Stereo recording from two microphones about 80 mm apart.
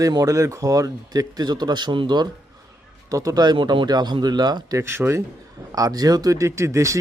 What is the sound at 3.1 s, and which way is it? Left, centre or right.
Speech, right.